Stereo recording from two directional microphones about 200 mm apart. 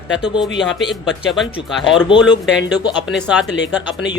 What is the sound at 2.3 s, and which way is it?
Speech, 60° left (ahead or behind).